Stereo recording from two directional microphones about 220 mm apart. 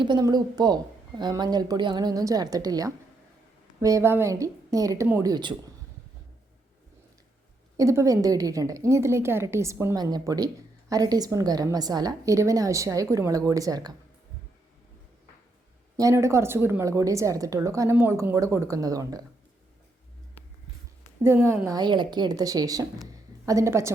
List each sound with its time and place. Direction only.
0.0 s a woman's voice: 20° right (ahead or behind)
7.8 s a woman's voice: 15° right (ahead or behind)
16.0 s a woman's voice: 15° right (ahead or behind)
21.2 s a woman's voice: 10° right (ahead or behind)
23.1 s a sound: 15° right (ahead or behind)